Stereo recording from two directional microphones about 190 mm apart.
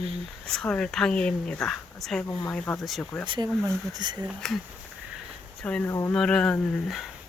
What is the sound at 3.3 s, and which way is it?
Speech, 20° right (ahead or behind).